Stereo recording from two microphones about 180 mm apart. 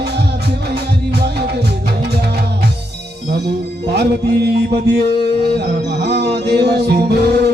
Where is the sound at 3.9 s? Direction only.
65° right (ahead or behind).